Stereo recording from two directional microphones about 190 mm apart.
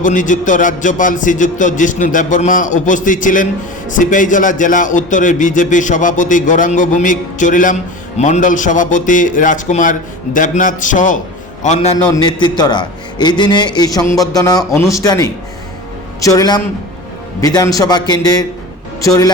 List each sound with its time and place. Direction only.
0.0 s a man's voice: 40° left (ahead or behind)
12.1 s a man's voice: 20° left (ahead or behind)